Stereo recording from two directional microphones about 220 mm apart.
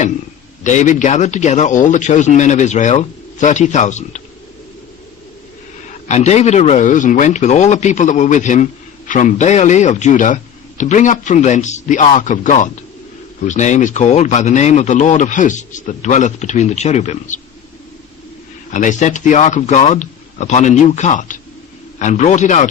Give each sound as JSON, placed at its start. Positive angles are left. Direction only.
{"t": 0.6, "sound": "speech", "side_deg": 35}
{"t": 6.1, "sound": "speech", "side_deg": 30}
{"t": 18.7, "sound": "speech", "side_deg": 35}